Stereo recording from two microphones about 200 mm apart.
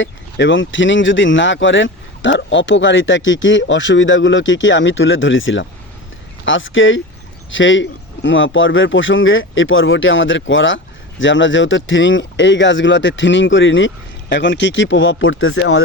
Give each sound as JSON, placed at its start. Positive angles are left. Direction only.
{"t": 0.0, "sound": "speech", "side_deg": 70}